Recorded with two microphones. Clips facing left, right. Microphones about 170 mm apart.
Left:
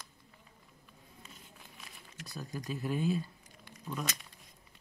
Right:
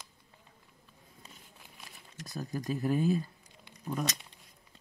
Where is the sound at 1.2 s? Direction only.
35° right (ahead or behind).